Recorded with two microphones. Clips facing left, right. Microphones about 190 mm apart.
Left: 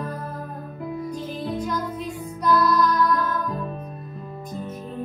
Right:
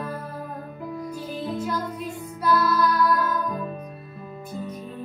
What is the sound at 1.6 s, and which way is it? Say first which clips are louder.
Music: left 1 dB; 5° right (ahead or behind).